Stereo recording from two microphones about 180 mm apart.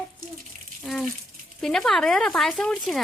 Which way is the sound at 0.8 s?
5° left (ahead or behind).